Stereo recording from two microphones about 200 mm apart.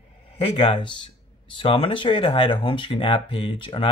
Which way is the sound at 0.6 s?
25° left (ahead or behind).